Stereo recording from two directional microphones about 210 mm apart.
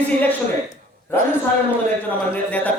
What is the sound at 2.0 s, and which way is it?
Speech, 10° left (ahead or behind).